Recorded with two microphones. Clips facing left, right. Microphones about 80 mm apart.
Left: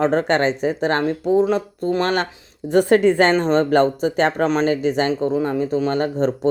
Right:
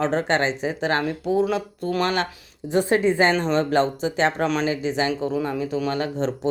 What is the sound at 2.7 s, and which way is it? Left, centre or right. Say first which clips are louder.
Speech: left 5 dB; left.